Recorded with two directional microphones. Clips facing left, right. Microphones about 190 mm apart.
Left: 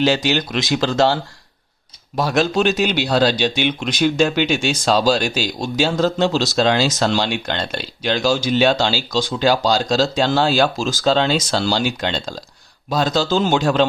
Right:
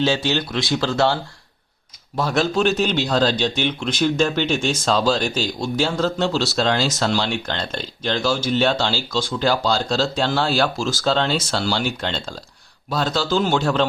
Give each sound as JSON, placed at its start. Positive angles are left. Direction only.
{"t": 0.0, "sound": "speech", "side_deg": 15}